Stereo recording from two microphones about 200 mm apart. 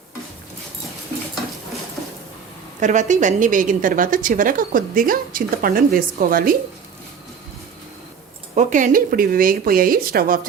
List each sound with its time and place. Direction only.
2.8 s a woman's voice: 35° right (ahead or behind)
8.5 s a woman's voice: 40° right (ahead or behind)